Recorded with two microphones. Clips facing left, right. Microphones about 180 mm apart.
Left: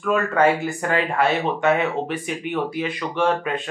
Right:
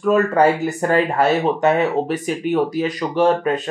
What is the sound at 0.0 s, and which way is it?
Speech, 35° right (ahead or behind).